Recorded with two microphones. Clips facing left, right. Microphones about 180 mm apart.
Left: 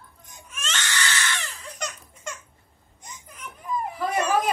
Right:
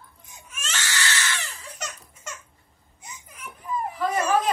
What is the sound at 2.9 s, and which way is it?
Children playing, 5° right (ahead or behind).